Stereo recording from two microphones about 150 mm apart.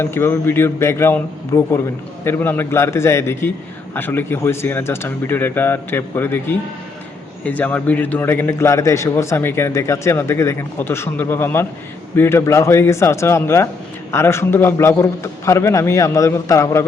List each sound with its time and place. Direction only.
0.0 s a man's voice: 15° left (ahead or behind)